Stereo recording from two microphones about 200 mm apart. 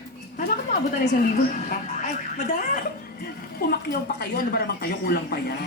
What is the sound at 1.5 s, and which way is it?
Speech, 40° left (ahead or behind).